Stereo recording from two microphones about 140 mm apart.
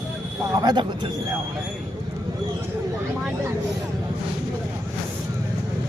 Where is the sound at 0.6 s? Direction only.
30° right (ahead or behind).